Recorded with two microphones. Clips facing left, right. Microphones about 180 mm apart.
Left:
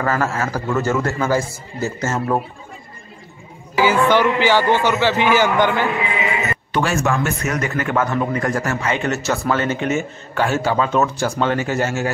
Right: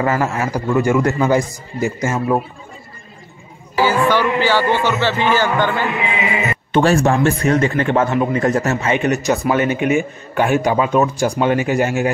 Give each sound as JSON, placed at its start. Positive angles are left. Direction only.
{"t": 0.0, "sound": "a man's voice", "side_deg": -20}
{"t": 3.7, "sound": "speech", "side_deg": 15}
{"t": 6.7, "sound": "a man's voice", "side_deg": -30}